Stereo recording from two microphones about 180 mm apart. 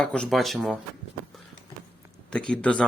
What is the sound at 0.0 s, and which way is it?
Speech, 5° left (ahead or behind).